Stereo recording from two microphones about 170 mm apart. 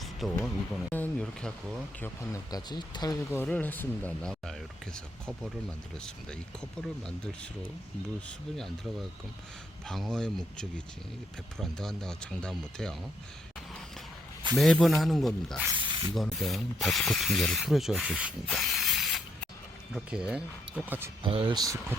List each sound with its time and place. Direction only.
0.0 s a sound: centre (ahead or behind)
0.3 s speech: 10° left (ahead or behind)
2.3 s speech: 25° left (ahead or behind)
3.2 s speech: 10° left (ahead or behind)
9.8 s speech: centre (ahead or behind)
14.5 s speech: centre (ahead or behind)
15.8 s spray: 30° right (ahead or behind)
16.1 s speech: centre (ahead or behind)
18.4 s spray: centre (ahead or behind)
19.9 s speech: 5° right (ahead or behind)
21.2 s speech: 30° right (ahead or behind)